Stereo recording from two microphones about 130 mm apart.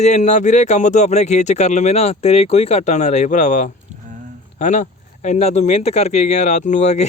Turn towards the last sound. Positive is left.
turn(degrees=65)  # may be behind; listen again after turning